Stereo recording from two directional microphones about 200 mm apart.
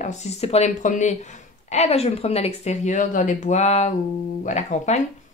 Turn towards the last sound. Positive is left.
turn(degrees=35)  # may be behind; listen again after turning